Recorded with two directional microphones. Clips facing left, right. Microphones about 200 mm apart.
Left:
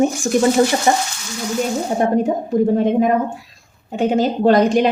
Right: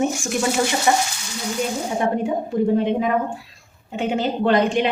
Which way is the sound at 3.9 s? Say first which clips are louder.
Left 5 dB; 40° left (ahead or behind).